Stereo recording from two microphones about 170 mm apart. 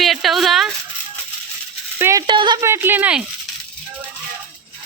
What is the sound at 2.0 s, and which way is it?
Speech, 15° right (ahead or behind).